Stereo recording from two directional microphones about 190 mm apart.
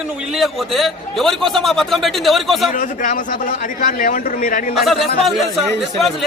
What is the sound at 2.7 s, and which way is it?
A man's voice, 45° left (ahead or behind).